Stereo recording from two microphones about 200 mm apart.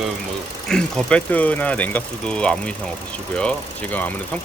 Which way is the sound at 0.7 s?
5° left (ahead or behind).